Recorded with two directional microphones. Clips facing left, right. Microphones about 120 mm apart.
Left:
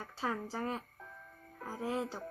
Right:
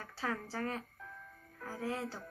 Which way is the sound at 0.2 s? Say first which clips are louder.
Left 1 dB; 15° left (ahead or behind).